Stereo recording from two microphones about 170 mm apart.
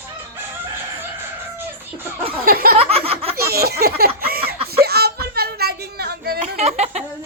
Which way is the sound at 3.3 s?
65° right (ahead or behind).